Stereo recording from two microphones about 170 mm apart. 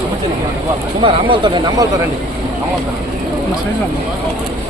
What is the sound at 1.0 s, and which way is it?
Speech, 30° right (ahead or behind).